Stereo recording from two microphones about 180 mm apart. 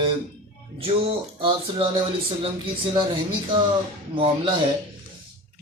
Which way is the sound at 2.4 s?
30° right (ahead or behind).